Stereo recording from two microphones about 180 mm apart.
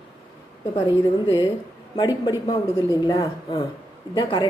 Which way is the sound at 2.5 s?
20° left (ahead or behind).